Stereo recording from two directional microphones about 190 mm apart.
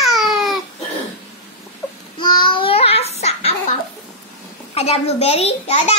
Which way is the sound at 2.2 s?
25° left (ahead or behind).